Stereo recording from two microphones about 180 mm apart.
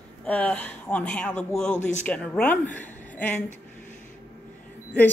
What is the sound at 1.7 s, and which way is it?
Speech, 40° left (ahead or behind).